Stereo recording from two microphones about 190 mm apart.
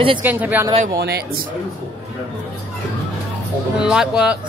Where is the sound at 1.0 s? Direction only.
55° right (ahead or behind).